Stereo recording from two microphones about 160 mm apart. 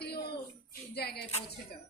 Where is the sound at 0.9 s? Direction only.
90° left.